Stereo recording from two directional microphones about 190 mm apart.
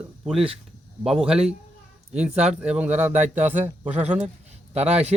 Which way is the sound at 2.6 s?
5° right (ahead or behind).